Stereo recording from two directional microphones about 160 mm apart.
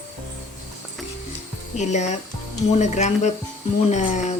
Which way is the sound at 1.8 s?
45° left (ahead or behind).